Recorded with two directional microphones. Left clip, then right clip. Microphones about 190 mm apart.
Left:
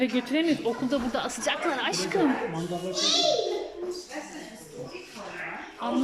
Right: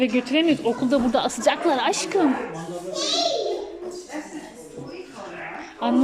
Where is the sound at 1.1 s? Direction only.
20° right (ahead or behind).